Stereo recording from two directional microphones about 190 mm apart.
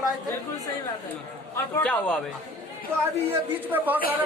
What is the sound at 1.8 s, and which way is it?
Speech, 10° left (ahead or behind).